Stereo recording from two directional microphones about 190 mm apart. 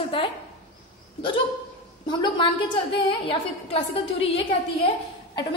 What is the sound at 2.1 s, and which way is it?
A woman's voice, 25° left (ahead or behind).